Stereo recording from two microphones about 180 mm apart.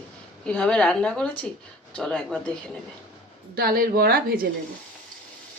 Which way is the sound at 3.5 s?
55° right (ahead or behind).